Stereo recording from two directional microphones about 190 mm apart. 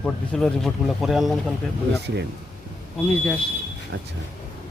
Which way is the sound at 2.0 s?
60° right (ahead or behind).